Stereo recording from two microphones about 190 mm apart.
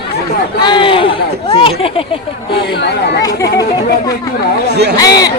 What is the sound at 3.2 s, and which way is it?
Speech, 20° left (ahead or behind).